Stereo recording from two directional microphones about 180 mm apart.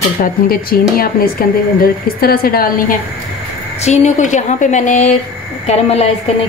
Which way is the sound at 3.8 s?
40° left (ahead or behind).